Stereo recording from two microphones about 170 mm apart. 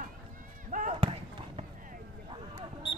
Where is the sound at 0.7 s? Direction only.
50° right (ahead or behind).